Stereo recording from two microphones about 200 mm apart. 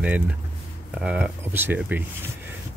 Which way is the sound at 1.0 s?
5° right (ahead or behind).